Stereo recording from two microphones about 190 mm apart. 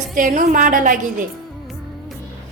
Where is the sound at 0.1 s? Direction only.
45° right (ahead or behind).